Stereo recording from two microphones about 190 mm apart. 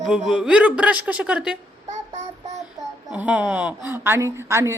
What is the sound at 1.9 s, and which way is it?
Child singing, 40° right (ahead or behind).